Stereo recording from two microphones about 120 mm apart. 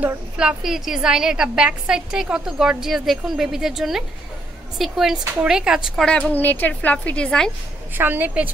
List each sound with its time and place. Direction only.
0.4 s a woman's voice: 5° right (ahead or behind)
6.0 s a woman's voice: 10° left (ahead or behind)
7.9 s a woman's voice: 15° right (ahead or behind)